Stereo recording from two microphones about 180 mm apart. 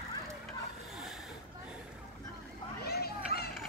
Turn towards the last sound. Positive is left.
turn(degrees=60)  # may be behind; listen again after turning